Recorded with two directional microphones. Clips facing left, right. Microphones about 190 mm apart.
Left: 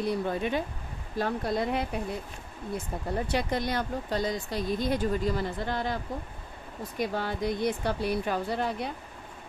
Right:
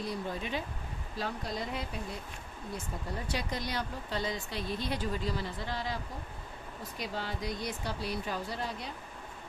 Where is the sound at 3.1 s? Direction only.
60° left (ahead or behind).